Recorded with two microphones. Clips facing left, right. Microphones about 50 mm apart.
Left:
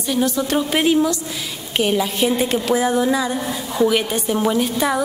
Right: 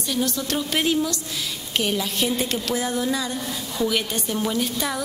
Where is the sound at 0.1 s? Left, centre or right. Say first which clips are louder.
Left 6 dB; centre.